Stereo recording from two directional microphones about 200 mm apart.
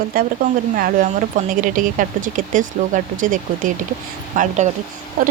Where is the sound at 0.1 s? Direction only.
45° right (ahead or behind).